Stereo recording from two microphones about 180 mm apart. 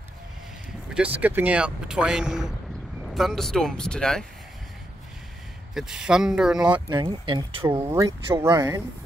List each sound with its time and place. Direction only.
0.9 s speech: 10° right (ahead or behind)
5.8 s speech: 5° right (ahead or behind)
6.7 s speech: 25° right (ahead or behind)
7.6 s speech: 15° right (ahead or behind)